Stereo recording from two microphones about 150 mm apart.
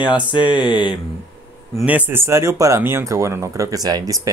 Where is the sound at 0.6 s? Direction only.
30° left (ahead or behind).